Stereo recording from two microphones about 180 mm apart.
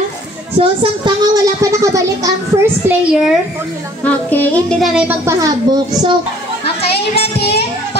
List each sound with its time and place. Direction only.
0.6 s a child's voice: 25° right (ahead or behind)
4.0 s a woman's voice: 10° left (ahead or behind); by 6.1 s 20° right (ahead or behind)
7.2 s music: 65° left (ahead or behind)